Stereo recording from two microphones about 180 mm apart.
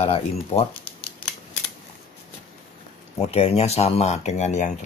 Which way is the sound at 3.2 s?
35° left (ahead or behind).